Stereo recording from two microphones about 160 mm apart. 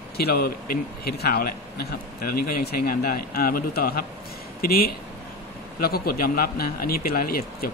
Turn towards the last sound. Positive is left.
turn(degrees=65)  # may be behind; listen again after turning